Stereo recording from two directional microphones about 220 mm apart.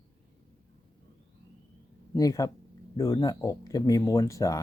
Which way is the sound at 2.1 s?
15° left (ahead or behind).